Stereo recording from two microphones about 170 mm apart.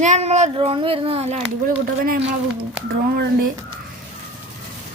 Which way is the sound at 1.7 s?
55° right (ahead or behind).